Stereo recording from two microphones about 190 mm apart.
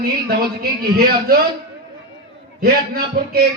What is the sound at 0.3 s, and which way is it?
A man's voice, 55° right (ahead or behind).